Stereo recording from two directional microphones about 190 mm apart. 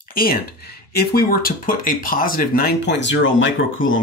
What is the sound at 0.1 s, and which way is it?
Speech, 50° left (ahead or behind).